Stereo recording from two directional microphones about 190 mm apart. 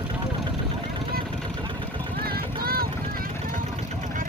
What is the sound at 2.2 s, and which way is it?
Vehicle, 55° right (ahead or behind).